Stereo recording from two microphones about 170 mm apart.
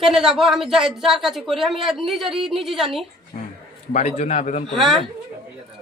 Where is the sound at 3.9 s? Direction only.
45° left (ahead or behind).